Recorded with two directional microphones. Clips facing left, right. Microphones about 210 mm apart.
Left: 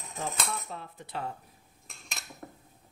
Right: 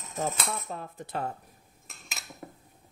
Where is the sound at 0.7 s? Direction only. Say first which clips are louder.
Right 4 dB; 45° right (ahead or behind).